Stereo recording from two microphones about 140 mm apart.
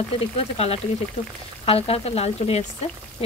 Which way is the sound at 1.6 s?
45° left (ahead or behind).